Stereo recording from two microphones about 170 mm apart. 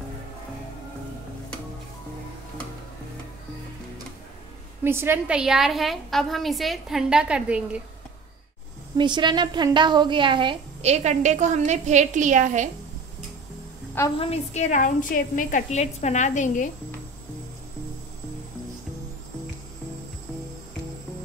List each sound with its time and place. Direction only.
4.8 s a woman's voice: 15° right (ahead or behind)
8.9 s a woman's voice: 25° right (ahead or behind); by 12.6 s 45° right (ahead or behind)
14.1 s a woman's voice: 35° left (ahead or behind)